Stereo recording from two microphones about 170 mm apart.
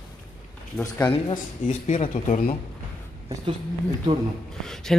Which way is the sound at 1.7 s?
45° left (ahead or behind).